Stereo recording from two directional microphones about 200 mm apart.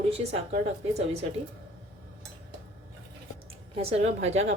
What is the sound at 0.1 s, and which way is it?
Speech, 30° right (ahead or behind).